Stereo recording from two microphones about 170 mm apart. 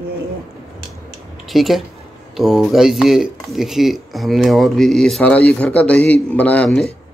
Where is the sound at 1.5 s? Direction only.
Centre (ahead or behind).